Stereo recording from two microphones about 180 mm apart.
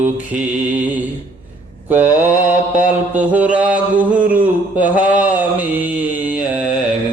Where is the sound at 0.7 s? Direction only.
10° right (ahead or behind).